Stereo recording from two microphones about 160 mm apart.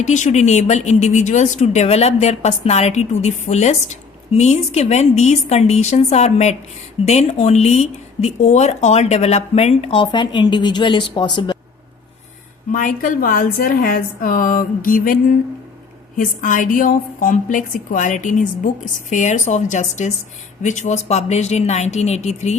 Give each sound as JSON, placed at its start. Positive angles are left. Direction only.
{"t": 0.0, "sound": "a woman's voice", "side_deg": 50}
{"t": 12.7, "sound": "a woman's voice", "side_deg": 55}